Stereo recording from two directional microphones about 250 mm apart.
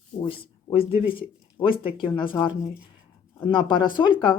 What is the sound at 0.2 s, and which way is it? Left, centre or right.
Speech, left.